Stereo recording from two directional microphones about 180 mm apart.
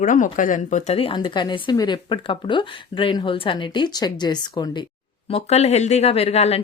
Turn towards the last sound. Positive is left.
turn(degrees=35)  # may be behind; listen again after turning